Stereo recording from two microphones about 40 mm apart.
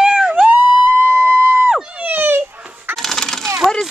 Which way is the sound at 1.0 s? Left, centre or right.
Right.